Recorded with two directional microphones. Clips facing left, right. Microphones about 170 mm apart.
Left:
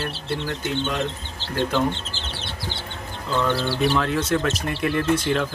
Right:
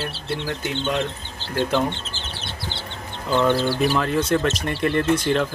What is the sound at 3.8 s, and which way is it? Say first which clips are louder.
Speech: right 1 dB; centre (ahead or behind).